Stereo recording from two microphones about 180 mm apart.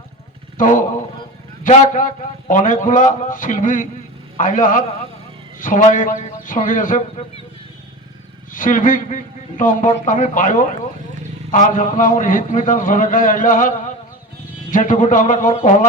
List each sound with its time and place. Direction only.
0.5 s a man's voice: 45° left (ahead or behind)
8.5 s a man's voice: 50° left (ahead or behind)